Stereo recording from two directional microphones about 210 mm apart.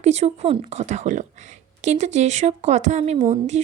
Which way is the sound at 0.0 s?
30° right (ahead or behind).